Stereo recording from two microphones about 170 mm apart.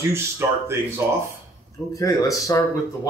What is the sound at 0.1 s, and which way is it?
Speech, 15° right (ahead or behind).